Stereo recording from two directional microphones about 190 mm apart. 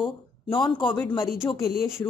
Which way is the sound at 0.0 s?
25° left (ahead or behind).